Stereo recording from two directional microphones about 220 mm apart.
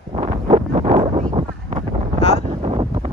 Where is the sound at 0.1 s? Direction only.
25° right (ahead or behind).